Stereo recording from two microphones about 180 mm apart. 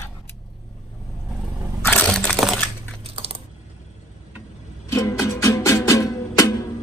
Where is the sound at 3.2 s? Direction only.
30° right (ahead or behind).